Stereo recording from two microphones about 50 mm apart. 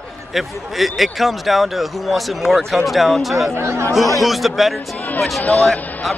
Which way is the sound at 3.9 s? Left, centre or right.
Centre.